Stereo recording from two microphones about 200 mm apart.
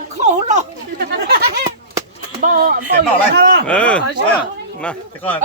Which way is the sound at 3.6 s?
5° left (ahead or behind).